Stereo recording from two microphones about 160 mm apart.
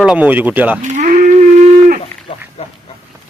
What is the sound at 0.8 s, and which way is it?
Cattle, 50° right (ahead or behind).